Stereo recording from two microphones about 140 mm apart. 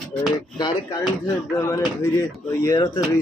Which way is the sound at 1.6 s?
20° left (ahead or behind).